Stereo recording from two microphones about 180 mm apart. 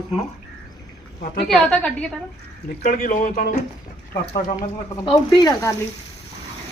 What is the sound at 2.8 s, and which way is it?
Speech, 50° left (ahead or behind).